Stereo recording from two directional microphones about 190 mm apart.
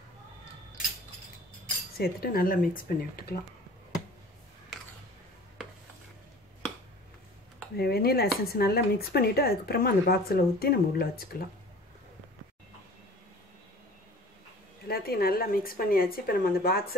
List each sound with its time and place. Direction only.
2.0 s speech: 50° left (ahead or behind)
7.7 s speech: 55° left (ahead or behind)
14.9 s speech: 55° left (ahead or behind)